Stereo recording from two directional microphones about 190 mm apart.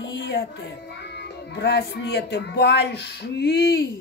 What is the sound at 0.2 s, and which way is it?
Music, 60° left (ahead or behind).